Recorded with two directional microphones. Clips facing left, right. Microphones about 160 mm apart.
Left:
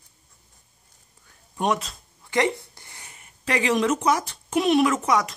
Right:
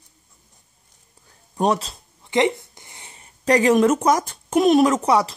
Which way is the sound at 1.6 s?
35° right (ahead or behind).